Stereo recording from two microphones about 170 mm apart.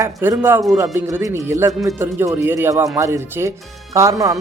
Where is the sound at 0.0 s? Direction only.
15° right (ahead or behind).